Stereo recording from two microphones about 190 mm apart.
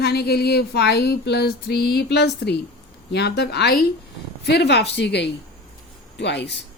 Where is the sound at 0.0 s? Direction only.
55° left (ahead or behind).